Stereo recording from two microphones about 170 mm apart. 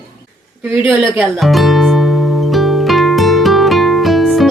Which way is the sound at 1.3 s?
Centre (ahead or behind).